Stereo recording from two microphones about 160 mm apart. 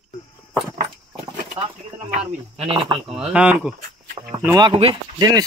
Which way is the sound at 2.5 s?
35° right (ahead or behind).